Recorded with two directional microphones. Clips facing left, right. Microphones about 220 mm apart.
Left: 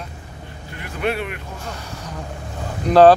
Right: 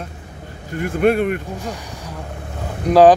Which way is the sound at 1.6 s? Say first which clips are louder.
Right 3 dB; 15° right (ahead or behind).